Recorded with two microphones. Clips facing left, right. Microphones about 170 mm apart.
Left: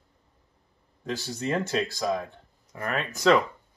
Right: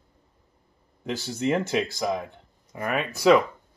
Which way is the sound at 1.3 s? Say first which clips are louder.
Right 4 dB; 15° right (ahead or behind).